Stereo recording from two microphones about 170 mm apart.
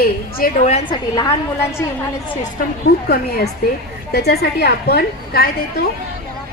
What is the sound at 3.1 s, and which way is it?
A woman's voice, 65° left (ahead or behind).